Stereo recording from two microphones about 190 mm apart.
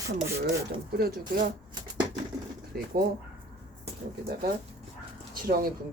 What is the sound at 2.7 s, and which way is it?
Speech, 55° right (ahead or behind).